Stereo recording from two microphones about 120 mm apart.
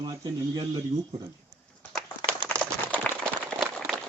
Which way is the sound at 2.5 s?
15° left (ahead or behind).